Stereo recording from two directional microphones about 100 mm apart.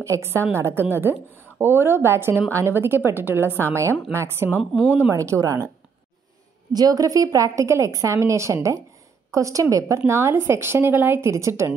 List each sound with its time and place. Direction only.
0.0 s a woman's voice: 25° right (ahead or behind)
6.7 s a woman's voice: 40° right (ahead or behind)